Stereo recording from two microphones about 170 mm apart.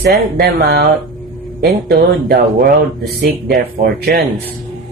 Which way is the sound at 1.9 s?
65° right (ahead or behind).